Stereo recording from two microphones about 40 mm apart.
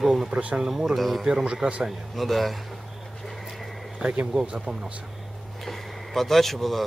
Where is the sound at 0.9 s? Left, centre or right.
Centre.